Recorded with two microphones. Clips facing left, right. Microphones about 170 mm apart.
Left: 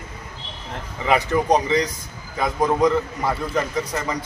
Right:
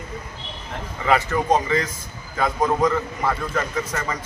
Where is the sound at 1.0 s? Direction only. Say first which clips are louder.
Left 1 dB; 15° left (ahead or behind).